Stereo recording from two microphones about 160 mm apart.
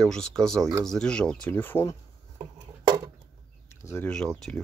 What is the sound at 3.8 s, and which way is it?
Speech, 15° left (ahead or behind).